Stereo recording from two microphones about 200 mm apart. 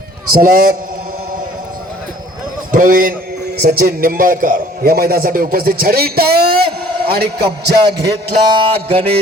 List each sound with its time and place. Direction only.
0.3 s a man's voice: 45° right (ahead or behind)
2.7 s a man's voice: 45° right (ahead or behind)
8.4 s a sound: 30° right (ahead or behind)